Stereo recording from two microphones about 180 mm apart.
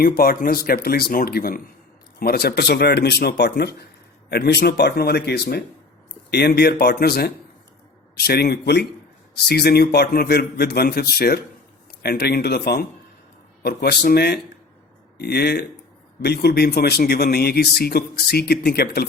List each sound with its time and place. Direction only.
0.0 s a man's voice: 55° left (ahead or behind)